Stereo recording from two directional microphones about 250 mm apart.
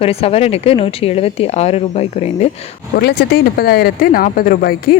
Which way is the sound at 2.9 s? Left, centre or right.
Left.